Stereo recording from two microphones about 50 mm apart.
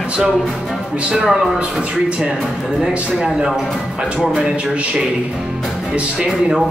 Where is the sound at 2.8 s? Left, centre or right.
Centre.